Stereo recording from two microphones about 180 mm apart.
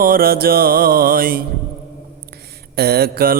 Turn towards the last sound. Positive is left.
turn(degrees=-55)  # may be behind; listen again after turning